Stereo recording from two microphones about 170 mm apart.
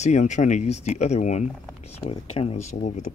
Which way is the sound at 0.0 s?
45° left (ahead or behind).